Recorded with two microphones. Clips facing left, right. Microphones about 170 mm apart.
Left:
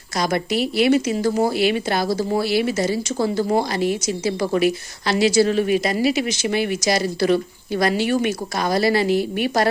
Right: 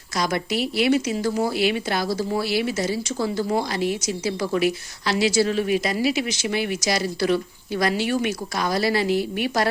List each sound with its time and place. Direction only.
0.2 s speech: 50° left (ahead or behind)